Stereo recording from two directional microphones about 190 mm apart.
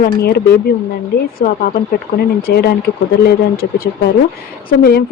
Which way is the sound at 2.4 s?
55° left (ahead or behind).